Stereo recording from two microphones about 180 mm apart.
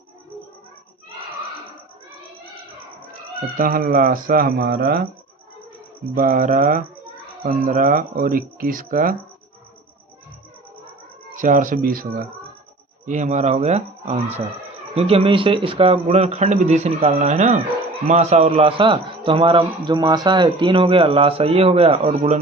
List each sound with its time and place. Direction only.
3.6 s speech: 50° right (ahead or behind)
6.1 s speech: 50° right (ahead or behind)
11.3 s speech: 45° right (ahead or behind)
13.1 s a man's voice: 45° right (ahead or behind)